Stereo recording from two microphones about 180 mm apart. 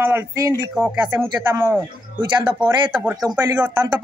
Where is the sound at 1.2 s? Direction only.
25° right (ahead or behind).